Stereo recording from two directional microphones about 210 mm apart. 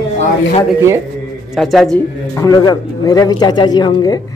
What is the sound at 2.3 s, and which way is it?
Speech, 15° left (ahead or behind).